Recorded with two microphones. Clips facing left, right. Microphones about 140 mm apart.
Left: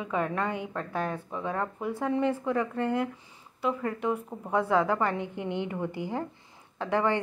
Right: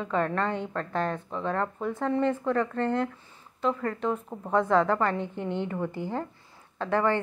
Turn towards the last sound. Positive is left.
turn(degrees=15)  # may be behind; listen again after turning